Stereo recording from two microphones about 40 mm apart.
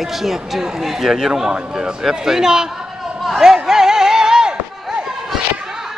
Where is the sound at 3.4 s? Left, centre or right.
Centre.